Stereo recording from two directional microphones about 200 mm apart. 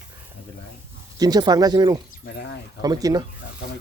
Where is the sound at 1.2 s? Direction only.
20° right (ahead or behind).